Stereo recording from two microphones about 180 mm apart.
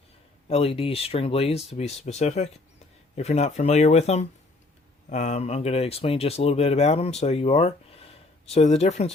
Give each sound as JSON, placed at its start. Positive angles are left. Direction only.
{"t": 0.4, "sound": "speech", "side_deg": 35}